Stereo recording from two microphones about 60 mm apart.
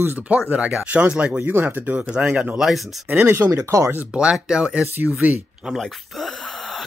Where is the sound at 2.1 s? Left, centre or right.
Centre.